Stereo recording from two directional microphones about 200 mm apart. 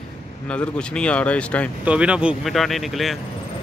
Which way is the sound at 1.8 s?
5° right (ahead or behind).